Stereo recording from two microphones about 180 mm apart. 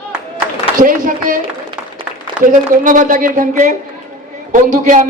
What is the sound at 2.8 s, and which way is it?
A man's voice, 50° right (ahead or behind).